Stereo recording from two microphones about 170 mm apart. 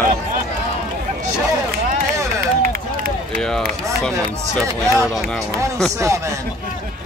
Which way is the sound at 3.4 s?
5° left (ahead or behind).